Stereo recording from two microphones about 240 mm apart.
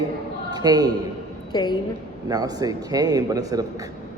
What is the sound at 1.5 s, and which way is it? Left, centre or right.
Speech, centre.